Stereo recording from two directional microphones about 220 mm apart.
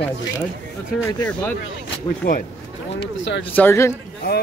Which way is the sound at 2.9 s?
55° left (ahead or behind).